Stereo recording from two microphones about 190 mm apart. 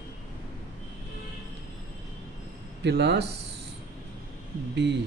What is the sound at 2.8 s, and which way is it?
Speech, 60° right (ahead or behind).